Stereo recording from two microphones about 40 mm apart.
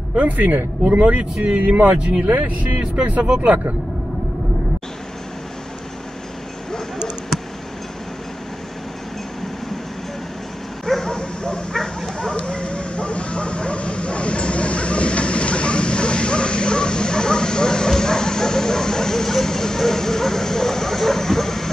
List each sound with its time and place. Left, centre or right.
0.1 s speech: right
0.6 s speech: right
1.4 s speech: right
1.8 s speech: right
3.2 s speech: right
11.1 s bow-wow: left
11.7 s bow-wow: centre